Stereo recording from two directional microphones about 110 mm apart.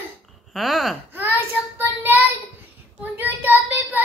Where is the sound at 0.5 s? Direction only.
Centre (ahead or behind).